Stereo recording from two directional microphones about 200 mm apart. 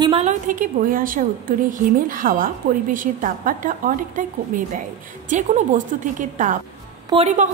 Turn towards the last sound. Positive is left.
turn(degrees=-30)  # may be behind; listen again after turning